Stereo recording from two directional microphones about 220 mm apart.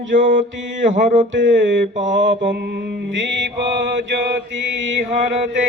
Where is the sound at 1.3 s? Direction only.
55° right (ahead or behind).